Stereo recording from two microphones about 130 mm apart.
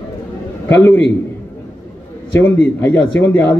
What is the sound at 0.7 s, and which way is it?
Speech, 20° left (ahead or behind).